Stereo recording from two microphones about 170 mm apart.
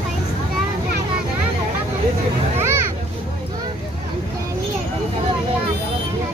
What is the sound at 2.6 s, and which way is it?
Children playing, 15° right (ahead or behind).